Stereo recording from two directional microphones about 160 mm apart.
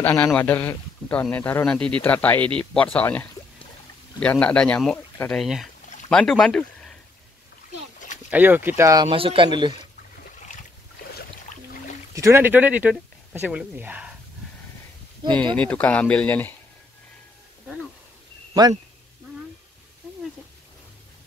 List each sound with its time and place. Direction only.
0.0 s speech: 10° left (ahead or behind)
8.3 s speech: 10° right (ahead or behind)
9.1 s speech: 35° right (ahead or behind)
12.1 s speech: 15° right (ahead or behind)
15.5 s speech: 10° left (ahead or behind)
18.5 s speech: 20° right (ahead or behind)